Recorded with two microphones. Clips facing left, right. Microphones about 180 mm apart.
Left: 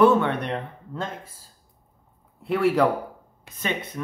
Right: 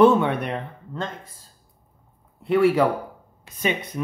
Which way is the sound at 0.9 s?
5° left (ahead or behind).